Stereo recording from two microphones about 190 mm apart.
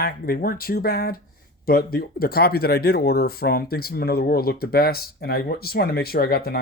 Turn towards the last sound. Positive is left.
turn(degrees=55)  # may be behind; listen again after turning